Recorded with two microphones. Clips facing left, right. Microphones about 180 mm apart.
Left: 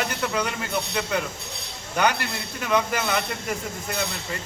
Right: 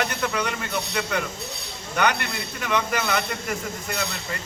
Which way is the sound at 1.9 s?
30° left (ahead or behind).